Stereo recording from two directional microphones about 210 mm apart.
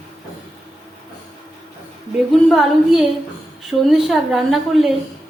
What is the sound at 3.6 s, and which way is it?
A woman's voice, centre (ahead or behind).